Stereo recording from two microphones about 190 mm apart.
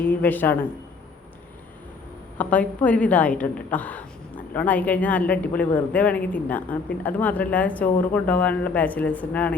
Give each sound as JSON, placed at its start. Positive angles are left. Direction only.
{"t": 0.0, "sound": "speech", "side_deg": 10}
{"t": 2.4, "sound": "speech", "side_deg": 5}